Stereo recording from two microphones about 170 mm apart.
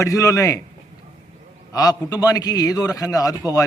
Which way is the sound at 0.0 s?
20° left (ahead or behind).